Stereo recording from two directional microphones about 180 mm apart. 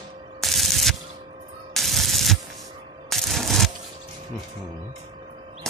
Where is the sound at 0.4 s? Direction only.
Centre (ahead or behind).